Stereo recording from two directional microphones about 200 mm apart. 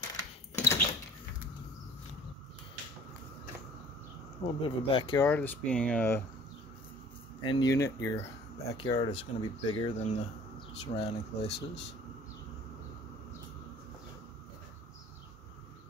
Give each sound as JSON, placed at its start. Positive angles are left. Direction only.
{"t": 0.0, "sound": "typewriter", "side_deg": 15}
{"t": 4.4, "sound": "speech", "side_deg": 25}
{"t": 5.2, "sound": "speech", "side_deg": 10}
{"t": 7.4, "sound": "speech", "side_deg": 20}